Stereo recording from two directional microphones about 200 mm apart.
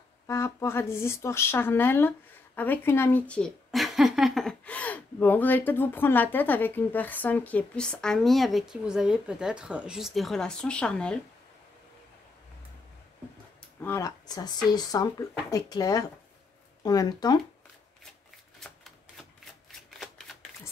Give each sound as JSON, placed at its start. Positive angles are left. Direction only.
{"t": 0.3, "sound": "a woman's voice", "side_deg": 15}
{"t": 13.6, "sound": "speech", "side_deg": 10}
{"t": 18.6, "sound": "shuffling cards", "side_deg": 0}